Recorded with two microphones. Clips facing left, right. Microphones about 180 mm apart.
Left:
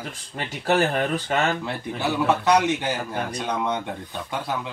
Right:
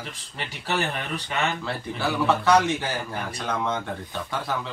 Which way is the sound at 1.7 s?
20° left (ahead or behind).